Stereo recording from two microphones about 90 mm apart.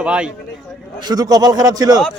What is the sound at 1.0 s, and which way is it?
Speech, 45° right (ahead or behind).